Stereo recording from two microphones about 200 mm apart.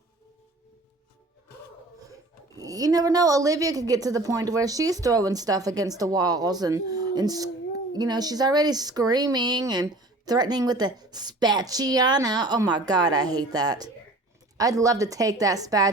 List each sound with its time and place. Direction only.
2.6 s speech: 20° right (ahead or behind)